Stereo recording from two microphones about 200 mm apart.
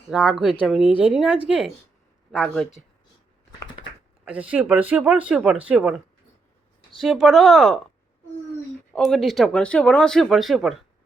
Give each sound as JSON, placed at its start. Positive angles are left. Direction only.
{"t": 0.1, "sound": "speech", "side_deg": 0}
{"t": 4.3, "sound": "speech", "side_deg": -5}
{"t": 7.0, "sound": "speech", "side_deg": 0}
{"t": 8.9, "sound": "speech", "side_deg": 0}